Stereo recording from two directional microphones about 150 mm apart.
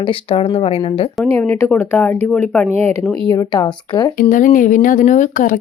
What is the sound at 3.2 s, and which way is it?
Speech, 25° left (ahead or behind).